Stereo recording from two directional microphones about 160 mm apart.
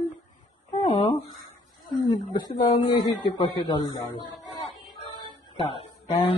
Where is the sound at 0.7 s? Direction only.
35° left (ahead or behind).